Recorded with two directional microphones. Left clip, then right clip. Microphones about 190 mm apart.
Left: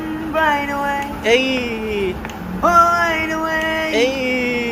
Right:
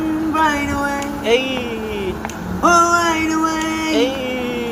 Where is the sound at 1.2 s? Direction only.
50° left (ahead or behind).